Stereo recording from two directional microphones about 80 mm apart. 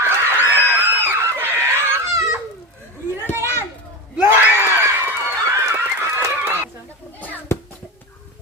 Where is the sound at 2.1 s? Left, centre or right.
Right.